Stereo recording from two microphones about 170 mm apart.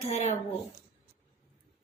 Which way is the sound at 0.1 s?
40° left (ahead or behind).